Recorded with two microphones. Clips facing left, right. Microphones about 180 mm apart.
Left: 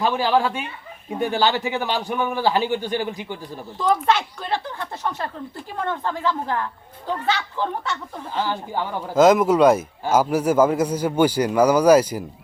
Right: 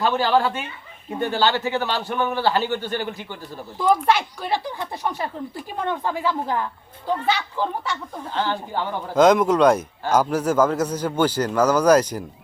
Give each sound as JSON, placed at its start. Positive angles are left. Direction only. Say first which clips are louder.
{"t": 0.0, "sound": "speech", "louder": "even", "side_deg": 10}
{"t": 3.8, "sound": "speech", "louder": "right 1 dB", "side_deg": -10}
{"t": 8.3, "sound": "speech", "louder": "even", "side_deg": 10}